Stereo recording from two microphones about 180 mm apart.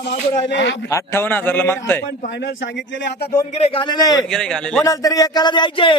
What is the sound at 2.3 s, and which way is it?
Speech, 85° left.